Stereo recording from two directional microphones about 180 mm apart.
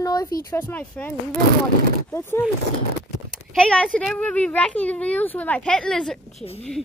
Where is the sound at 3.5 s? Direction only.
5° left (ahead or behind).